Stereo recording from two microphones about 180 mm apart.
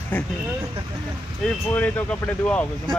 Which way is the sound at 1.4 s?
Centre (ahead or behind).